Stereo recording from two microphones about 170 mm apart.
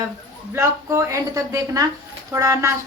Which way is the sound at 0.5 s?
20° right (ahead or behind).